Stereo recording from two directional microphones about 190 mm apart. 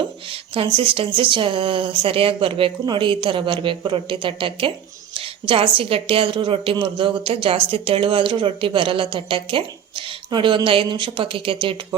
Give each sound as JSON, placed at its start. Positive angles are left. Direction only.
{"t": 0.3, "sound": "a woman's voice", "side_deg": -30}